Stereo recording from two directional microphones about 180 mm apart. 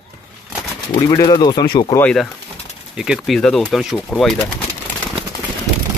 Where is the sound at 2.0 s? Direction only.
5° left (ahead or behind).